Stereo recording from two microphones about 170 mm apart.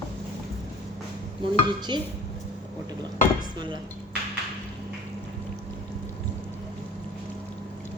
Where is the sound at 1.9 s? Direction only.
25° right (ahead or behind).